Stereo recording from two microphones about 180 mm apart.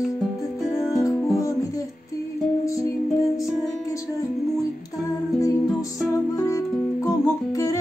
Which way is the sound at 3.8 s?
15° left (ahead or behind).